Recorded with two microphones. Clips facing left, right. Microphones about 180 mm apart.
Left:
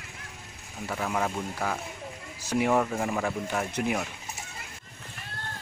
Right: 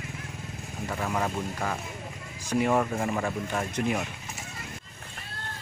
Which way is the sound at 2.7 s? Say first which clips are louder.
Even; centre (ahead or behind).